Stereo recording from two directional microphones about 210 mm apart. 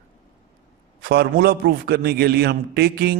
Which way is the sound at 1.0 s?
50° right (ahead or behind).